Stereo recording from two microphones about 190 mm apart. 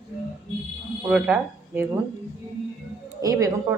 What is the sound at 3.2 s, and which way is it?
Speech, 20° right (ahead or behind).